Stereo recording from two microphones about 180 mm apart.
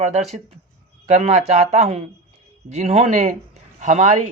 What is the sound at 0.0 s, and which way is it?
Speech, 35° right (ahead or behind).